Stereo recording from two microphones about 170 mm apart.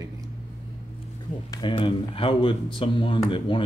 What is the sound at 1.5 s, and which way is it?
A man's voice, 30° left (ahead or behind).